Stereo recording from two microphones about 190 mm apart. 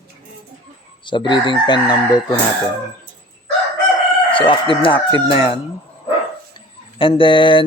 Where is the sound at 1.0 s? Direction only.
25° left (ahead or behind).